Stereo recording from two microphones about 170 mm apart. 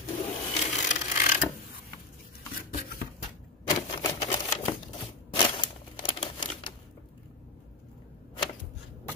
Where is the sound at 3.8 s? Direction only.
25° left (ahead or behind).